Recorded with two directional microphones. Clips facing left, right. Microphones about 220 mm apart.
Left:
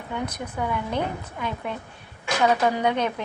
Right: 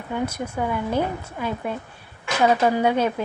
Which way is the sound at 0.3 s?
25° right (ahead or behind).